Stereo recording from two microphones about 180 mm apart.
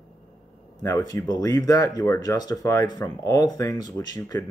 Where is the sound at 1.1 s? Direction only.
20° left (ahead or behind).